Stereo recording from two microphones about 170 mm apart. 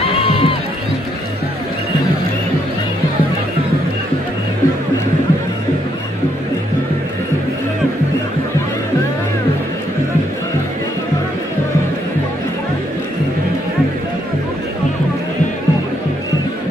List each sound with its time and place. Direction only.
0.0 s music: 35° left (ahead or behind)